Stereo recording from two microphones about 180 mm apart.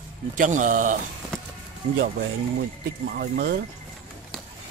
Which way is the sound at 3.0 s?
55° right (ahead or behind).